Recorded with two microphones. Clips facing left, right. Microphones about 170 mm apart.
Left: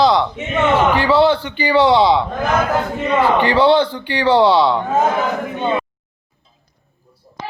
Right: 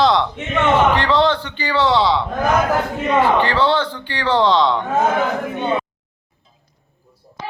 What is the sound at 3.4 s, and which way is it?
A man's voice, 15° left (ahead or behind).